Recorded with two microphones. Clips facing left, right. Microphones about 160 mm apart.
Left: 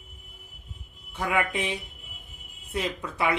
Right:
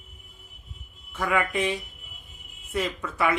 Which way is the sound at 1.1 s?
20° left (ahead or behind).